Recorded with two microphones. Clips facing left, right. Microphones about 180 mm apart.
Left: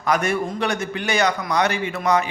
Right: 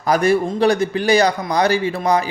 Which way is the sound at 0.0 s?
35° right (ahead or behind).